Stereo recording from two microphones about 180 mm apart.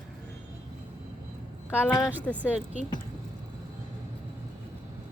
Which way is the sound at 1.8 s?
20° left (ahead or behind).